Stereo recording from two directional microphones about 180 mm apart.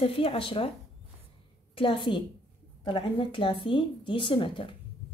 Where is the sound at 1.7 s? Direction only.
25° left (ahead or behind).